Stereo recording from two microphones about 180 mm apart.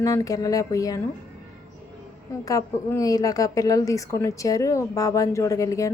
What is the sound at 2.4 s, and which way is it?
A woman's voice, 20° left (ahead or behind).